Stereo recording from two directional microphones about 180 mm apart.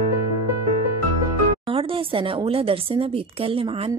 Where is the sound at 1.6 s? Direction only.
30° right (ahead or behind).